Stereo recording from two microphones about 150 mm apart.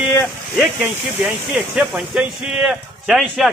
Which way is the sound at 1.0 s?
5° right (ahead or behind).